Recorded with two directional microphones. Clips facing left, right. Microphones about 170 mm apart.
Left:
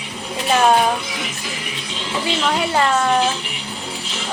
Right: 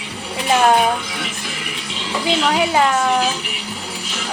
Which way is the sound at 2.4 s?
5° right (ahead or behind).